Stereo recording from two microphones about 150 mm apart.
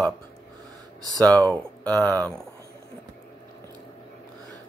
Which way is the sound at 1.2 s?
10° left (ahead or behind).